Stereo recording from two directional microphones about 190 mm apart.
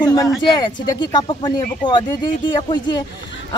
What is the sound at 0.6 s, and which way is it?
Speech, 20° left (ahead or behind).